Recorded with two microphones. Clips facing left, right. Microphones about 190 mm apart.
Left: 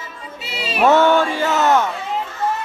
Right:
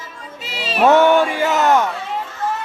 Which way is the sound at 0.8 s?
15° right (ahead or behind).